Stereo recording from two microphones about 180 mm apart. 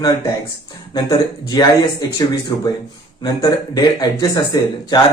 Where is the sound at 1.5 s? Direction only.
20° left (ahead or behind).